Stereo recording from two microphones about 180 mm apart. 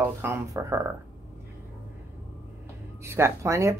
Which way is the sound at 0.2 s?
15° right (ahead or behind).